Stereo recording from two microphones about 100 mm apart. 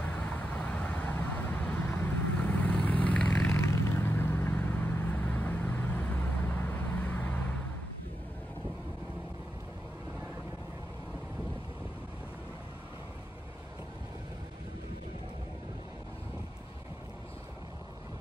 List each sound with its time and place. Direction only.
0.0 s vehicle: 20° left (ahead or behind)